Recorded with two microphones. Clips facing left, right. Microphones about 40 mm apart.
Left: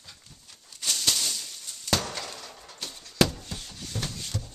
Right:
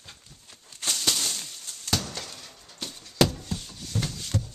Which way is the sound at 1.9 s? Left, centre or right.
Left.